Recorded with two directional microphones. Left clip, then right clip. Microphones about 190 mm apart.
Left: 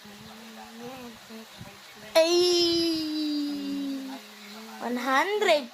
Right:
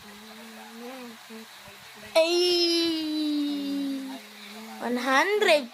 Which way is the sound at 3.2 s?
15° right (ahead or behind).